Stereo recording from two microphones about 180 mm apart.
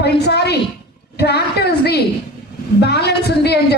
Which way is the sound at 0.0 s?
65° left (ahead or behind).